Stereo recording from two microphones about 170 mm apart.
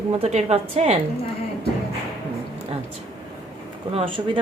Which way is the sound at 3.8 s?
35° right (ahead or behind).